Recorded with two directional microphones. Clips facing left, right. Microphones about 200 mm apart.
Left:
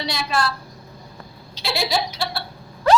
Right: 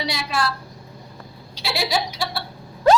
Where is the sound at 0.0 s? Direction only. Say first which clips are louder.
Left 1 dB; 10° right (ahead or behind).